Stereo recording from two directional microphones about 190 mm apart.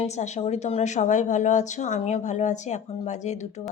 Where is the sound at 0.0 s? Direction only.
35° left (ahead or behind).